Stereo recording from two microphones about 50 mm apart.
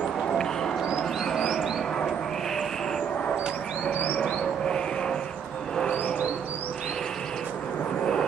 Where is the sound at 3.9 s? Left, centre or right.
Left.